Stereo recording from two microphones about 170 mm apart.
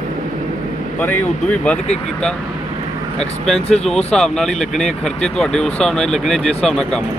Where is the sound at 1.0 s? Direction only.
10° left (ahead or behind).